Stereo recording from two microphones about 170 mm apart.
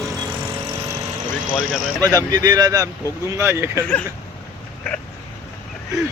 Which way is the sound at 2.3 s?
20° right (ahead or behind).